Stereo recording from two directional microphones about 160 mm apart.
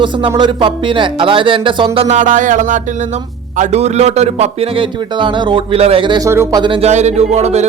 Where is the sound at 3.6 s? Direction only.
45° right (ahead or behind).